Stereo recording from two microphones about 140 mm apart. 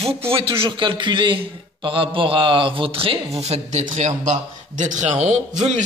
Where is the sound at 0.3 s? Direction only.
40° right (ahead or behind).